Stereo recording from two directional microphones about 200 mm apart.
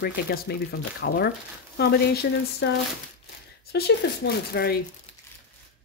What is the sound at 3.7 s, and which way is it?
Speech, 55° left (ahead or behind).